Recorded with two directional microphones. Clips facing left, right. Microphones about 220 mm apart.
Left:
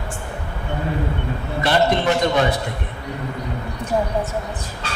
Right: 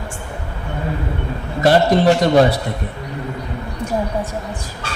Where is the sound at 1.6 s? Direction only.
35° right (ahead or behind).